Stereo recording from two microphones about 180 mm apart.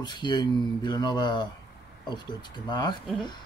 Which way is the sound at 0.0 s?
25° left (ahead or behind).